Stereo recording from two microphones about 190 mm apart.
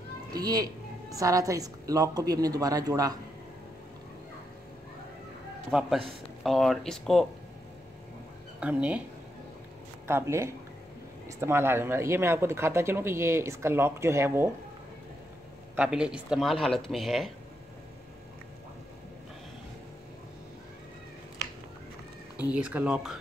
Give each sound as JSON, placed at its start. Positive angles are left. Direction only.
{"t": 0.3, "sound": "a woman's voice", "side_deg": -20}
{"t": 5.7, "sound": "speech", "side_deg": -5}
{"t": 8.5, "sound": "speech", "side_deg": -5}
{"t": 10.0, "sound": "speech", "side_deg": -15}
{"t": 15.7, "sound": "speech", "side_deg": -5}
{"t": 22.4, "sound": "speech", "side_deg": -5}